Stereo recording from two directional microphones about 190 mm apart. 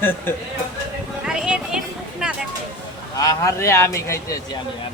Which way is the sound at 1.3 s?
5° right (ahead or behind).